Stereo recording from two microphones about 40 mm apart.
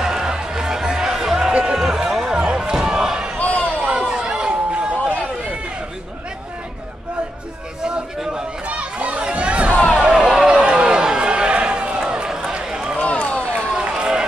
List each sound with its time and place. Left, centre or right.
0.0 s music: centre
1.5 s music: right
3.3 s a sound: left
3.9 s run: centre
8.6 s chatter: right
9.2 s a sound: right
9.9 s a sound: centre
10.5 s run: right
12.9 s run: left
13.7 s run: right